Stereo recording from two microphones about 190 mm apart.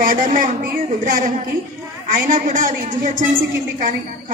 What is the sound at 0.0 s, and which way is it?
A woman's voice, 45° right (ahead or behind).